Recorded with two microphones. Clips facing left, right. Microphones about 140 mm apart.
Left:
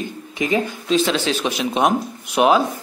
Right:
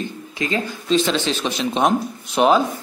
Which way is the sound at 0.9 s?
5° left (ahead or behind).